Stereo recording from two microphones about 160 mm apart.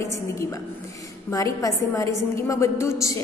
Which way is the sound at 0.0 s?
15° left (ahead or behind).